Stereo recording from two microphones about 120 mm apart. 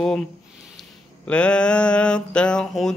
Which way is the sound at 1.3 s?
10° left (ahead or behind).